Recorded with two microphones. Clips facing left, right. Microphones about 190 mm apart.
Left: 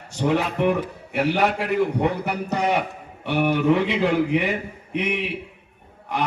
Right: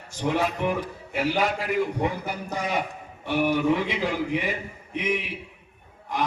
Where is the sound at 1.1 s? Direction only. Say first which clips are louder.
Left 4 dB; 65° left (ahead or behind).